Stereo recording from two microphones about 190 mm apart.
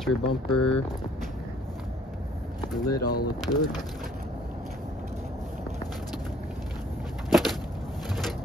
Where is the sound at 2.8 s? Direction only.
20° left (ahead or behind).